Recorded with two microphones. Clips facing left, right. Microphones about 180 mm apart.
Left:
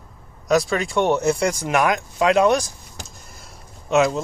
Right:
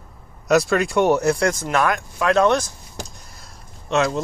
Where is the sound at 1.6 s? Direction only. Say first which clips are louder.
Left 1 dB; 15° left (ahead or behind).